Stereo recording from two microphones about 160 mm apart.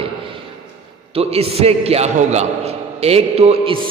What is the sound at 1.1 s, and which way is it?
A man's voice, 40° right (ahead or behind).